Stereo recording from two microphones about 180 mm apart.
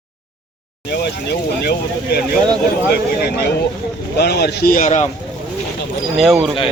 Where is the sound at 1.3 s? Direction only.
60° left (ahead or behind); by 5.0 s 45° left (ahead or behind).